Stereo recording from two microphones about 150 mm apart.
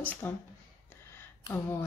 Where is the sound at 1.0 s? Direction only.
15° left (ahead or behind).